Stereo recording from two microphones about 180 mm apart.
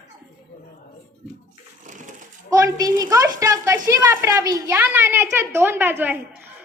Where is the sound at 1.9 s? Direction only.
45° right (ahead or behind).